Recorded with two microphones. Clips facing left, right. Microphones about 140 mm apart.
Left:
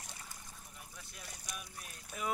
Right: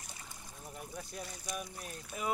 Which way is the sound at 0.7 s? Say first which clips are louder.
Right 10 dB; 40° right (ahead or behind).